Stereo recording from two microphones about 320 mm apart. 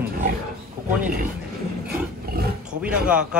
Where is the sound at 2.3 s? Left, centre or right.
Right.